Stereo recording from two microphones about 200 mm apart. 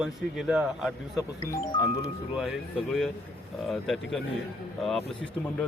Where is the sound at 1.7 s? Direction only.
15° left (ahead or behind).